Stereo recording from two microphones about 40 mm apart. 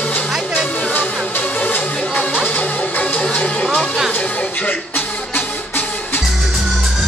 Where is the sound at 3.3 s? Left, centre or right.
Left.